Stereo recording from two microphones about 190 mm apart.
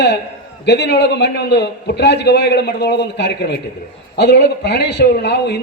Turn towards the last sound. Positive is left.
turn(degrees=60)  # may be behind; listen again after turning